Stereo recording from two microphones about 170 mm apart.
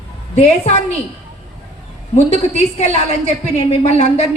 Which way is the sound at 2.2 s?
40° left (ahead or behind).